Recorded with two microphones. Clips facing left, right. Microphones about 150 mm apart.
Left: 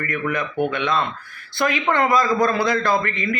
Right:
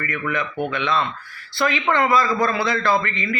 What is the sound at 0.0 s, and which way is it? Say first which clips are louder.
Speech: left 1 dB; 45° left (ahead or behind).